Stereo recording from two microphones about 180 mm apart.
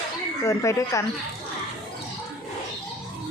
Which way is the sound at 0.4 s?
15° left (ahead or behind).